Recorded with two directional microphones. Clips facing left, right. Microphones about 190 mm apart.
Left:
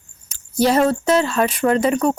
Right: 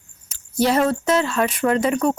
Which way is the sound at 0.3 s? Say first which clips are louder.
Left 2 dB; 40° left (ahead or behind).